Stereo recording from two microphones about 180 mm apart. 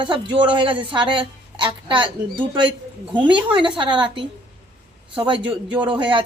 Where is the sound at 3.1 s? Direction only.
25° right (ahead or behind).